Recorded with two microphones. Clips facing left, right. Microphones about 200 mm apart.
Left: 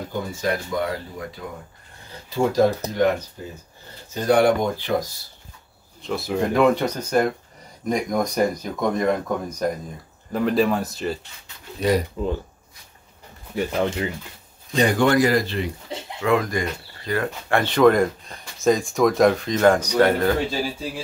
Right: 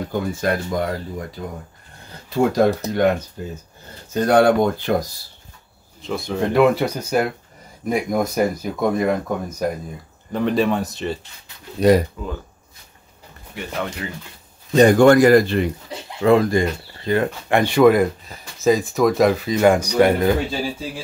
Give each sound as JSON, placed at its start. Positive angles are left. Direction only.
{"t": 0.4, "sound": "speech", "side_deg": -50}
{"t": 2.2, "sound": "speech", "side_deg": -60}
{"t": 4.1, "sound": "speech", "side_deg": -55}
{"t": 6.0, "sound": "speech", "side_deg": 0}
{"t": 11.8, "sound": "speech", "side_deg": -35}
{"t": 12.2, "sound": "speech", "side_deg": 30}
{"t": 13.6, "sound": "speech", "side_deg": 30}
{"t": 14.7, "sound": "speech", "side_deg": -45}
{"t": 16.2, "sound": "speech", "side_deg": -30}